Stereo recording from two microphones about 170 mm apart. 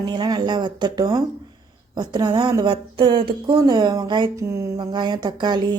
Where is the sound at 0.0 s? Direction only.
25° right (ahead or behind).